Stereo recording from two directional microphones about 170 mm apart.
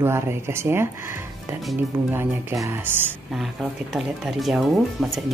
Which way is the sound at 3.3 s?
Centre (ahead or behind).